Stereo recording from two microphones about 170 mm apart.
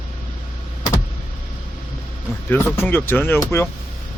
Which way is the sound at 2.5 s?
10° left (ahead or behind).